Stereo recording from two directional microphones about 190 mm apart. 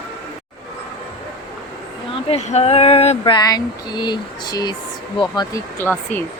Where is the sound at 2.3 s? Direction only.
35° left (ahead or behind).